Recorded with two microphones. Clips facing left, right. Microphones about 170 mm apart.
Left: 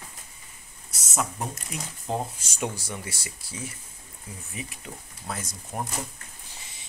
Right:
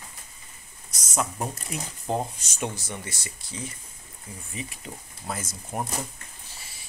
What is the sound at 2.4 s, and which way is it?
Speech, 10° left (ahead or behind).